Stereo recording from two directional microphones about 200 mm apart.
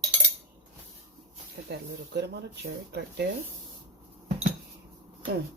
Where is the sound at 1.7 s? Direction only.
55° right (ahead or behind).